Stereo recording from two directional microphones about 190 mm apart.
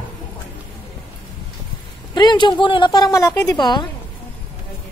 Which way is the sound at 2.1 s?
25° left (ahead or behind).